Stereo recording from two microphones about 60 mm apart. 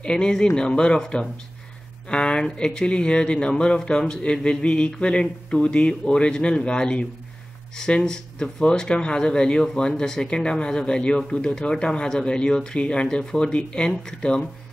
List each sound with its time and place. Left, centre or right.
0.0 s speech: centre